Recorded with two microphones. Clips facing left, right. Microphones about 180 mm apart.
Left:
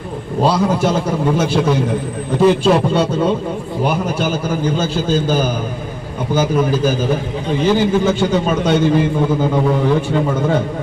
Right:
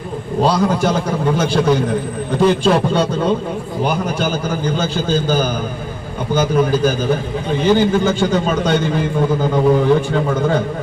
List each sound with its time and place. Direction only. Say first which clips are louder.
0.4 s a man's voice: left 1 dB; 5° left (ahead or behind)